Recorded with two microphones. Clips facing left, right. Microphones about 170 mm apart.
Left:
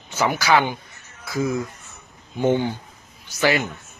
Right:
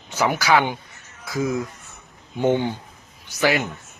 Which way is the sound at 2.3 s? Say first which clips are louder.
Even; 20° right (ahead or behind).